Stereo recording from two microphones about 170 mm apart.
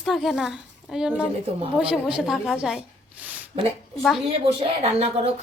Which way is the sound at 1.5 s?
35° right (ahead or behind).